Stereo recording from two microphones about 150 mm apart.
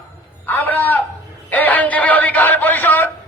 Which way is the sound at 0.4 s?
15° left (ahead or behind).